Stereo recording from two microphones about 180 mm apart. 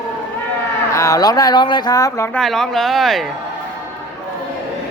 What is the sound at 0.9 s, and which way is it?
Speech, 20° left (ahead or behind).